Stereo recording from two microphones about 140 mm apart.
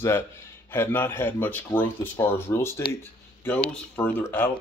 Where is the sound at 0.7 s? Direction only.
15° left (ahead or behind).